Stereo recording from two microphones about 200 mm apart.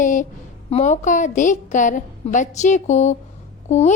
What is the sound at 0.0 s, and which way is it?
A woman's voice, 40° left (ahead or behind).